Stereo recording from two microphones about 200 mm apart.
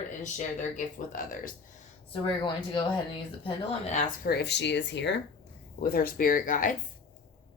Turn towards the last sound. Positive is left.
turn(degrees=40)  # may be behind; listen again after turning